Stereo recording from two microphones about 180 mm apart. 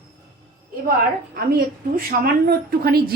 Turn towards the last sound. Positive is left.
turn(degrees=-60)  # may be behind; listen again after turning